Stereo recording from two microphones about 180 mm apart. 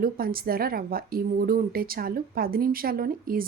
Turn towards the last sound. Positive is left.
turn(degrees=-55)  # may be behind; listen again after turning